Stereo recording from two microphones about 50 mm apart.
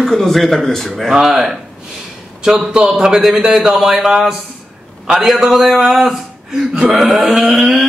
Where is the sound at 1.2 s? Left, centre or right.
Centre.